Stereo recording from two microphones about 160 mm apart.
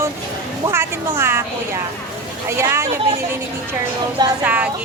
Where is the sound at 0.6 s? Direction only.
15° right (ahead or behind).